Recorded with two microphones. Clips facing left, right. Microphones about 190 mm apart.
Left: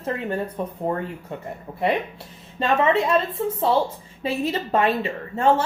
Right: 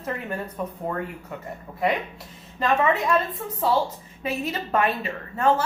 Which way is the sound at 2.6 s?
30° left (ahead or behind).